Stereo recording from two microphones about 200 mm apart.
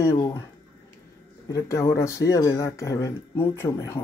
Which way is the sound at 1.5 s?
15° left (ahead or behind).